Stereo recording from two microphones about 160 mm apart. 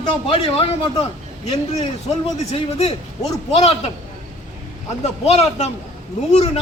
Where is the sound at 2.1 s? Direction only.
40° left (ahead or behind).